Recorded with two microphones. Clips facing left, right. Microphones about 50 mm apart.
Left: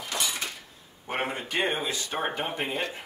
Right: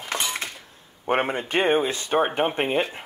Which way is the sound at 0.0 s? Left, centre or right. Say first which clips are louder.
Right 3 dB; right.